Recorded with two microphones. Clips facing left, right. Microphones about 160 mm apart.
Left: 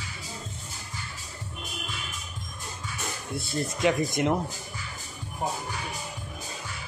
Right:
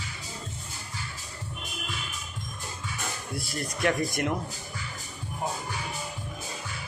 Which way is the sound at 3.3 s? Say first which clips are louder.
Left 5 dB; 25° left (ahead or behind).